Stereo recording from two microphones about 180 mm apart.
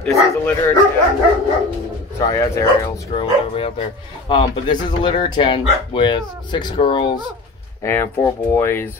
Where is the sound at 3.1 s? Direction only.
35° left (ahead or behind).